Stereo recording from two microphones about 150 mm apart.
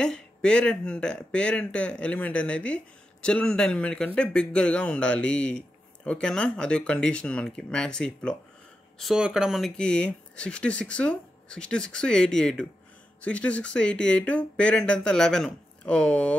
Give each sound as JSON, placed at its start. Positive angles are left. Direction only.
{"t": 0.0, "sound": "speech", "side_deg": 5}